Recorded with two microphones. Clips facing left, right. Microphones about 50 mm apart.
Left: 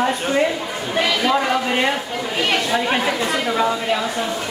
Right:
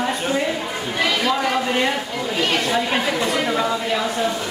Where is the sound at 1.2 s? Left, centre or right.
Centre.